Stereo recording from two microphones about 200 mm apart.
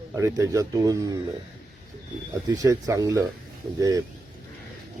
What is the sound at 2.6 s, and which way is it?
Speech, 15° right (ahead or behind).